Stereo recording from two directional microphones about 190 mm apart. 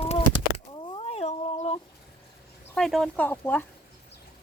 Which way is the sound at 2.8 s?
Centre (ahead or behind).